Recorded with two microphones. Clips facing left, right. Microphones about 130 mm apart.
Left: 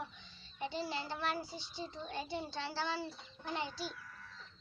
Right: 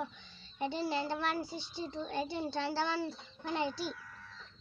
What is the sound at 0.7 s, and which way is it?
Child singing, 60° right (ahead or behind).